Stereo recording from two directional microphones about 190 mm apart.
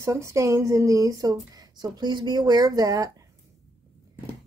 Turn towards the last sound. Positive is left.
turn(degrees=-20)  # may be behind; listen again after turning